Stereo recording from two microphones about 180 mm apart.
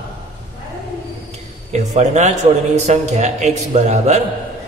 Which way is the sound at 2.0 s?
40° right (ahead or behind).